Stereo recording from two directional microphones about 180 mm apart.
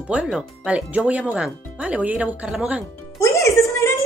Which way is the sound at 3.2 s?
15° left (ahead or behind).